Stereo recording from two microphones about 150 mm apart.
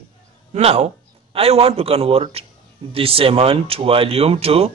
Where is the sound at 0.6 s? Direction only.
45° right (ahead or behind).